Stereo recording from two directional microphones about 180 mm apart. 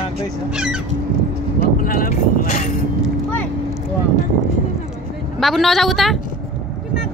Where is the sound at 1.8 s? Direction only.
50° left (ahead or behind).